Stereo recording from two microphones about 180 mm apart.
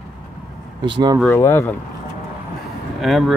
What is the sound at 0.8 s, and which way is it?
Speech, 25° right (ahead or behind).